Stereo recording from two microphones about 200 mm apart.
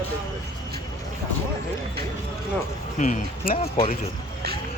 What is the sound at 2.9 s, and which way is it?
Speech, 40° left (ahead or behind).